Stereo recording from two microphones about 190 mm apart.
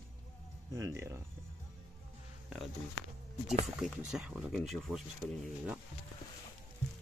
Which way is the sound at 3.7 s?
5° right (ahead or behind).